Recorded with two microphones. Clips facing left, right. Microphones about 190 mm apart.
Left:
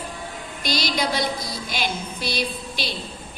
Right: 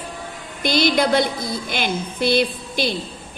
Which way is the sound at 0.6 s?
55° right (ahead or behind).